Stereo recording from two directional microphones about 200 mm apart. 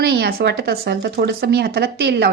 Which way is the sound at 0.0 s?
55° right (ahead or behind).